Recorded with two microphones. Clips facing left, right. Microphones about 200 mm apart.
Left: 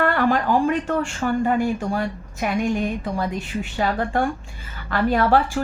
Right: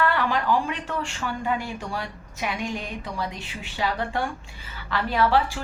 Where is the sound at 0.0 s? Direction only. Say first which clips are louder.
Left 4 dB; 50° left (ahead or behind).